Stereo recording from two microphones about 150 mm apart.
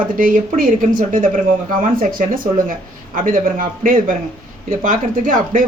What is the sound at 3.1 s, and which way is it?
Speech, 65° right (ahead or behind).